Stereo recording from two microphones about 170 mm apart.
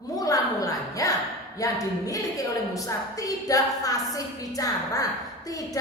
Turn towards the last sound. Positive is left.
turn(degrees=20)  # may be behind; listen again after turning